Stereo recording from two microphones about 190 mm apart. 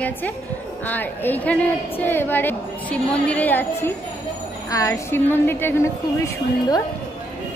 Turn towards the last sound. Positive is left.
turn(degrees=15)  # may be behind; listen again after turning